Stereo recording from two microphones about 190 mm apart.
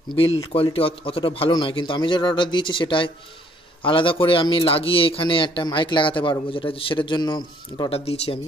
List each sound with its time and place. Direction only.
0.5 s a man's voice: 30° left (ahead or behind)